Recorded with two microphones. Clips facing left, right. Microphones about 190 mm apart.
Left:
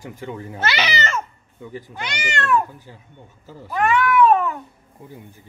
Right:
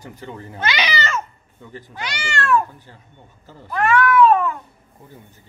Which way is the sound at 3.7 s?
20° left (ahead or behind).